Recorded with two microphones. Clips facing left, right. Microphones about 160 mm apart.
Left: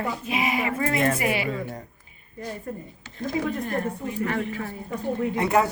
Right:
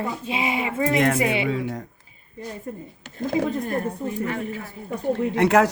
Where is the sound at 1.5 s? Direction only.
90° right.